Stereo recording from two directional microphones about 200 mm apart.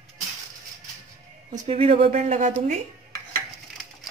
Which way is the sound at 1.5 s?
30° right (ahead or behind).